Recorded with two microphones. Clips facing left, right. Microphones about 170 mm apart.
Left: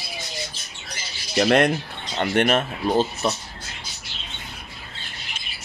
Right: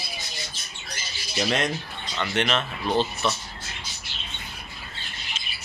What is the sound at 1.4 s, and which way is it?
Speech, 55° left (ahead or behind).